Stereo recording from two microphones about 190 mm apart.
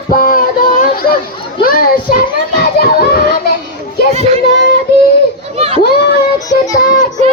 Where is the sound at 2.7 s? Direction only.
50° left (ahead or behind).